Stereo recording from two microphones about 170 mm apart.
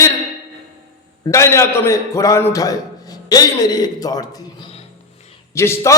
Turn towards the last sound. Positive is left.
turn(degrees=15)  # may be behind; listen again after turning